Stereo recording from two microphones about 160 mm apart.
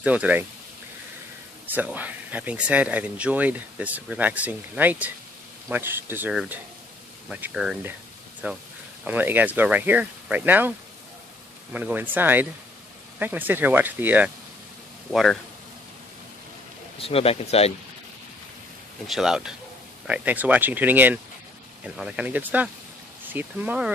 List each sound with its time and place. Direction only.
0.0 s speech: 10° right (ahead or behind)
1.7 s speech: 10° right (ahead or behind)
11.7 s speech: 10° right (ahead or behind)
17.0 s speech: 35° left (ahead or behind)
19.0 s speech: centre (ahead or behind)